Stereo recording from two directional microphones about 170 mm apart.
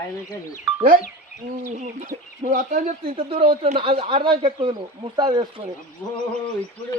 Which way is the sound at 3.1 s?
30° right (ahead or behind).